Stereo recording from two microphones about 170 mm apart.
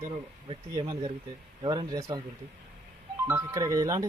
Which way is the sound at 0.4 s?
30° right (ahead or behind).